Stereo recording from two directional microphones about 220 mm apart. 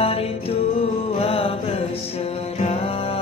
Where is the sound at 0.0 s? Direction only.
25° left (ahead or behind).